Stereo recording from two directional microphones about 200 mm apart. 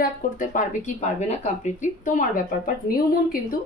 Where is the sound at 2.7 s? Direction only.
45° left (ahead or behind).